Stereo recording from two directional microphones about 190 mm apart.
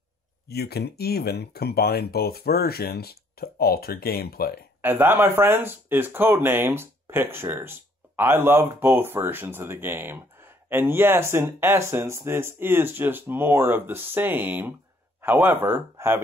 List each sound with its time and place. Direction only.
0.5 s speech: 55° left (ahead or behind)
4.8 s speech: 10° right (ahead or behind)